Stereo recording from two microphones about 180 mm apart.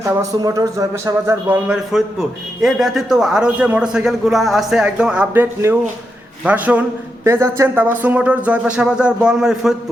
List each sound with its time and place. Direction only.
0.0 s music: 20° right (ahead or behind)
2.6 s speech: centre (ahead or behind)
6.4 s music: 10° right (ahead or behind)